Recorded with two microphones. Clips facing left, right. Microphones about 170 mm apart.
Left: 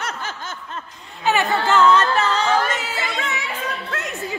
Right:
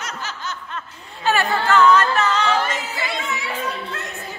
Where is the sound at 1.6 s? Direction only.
25° left (ahead or behind).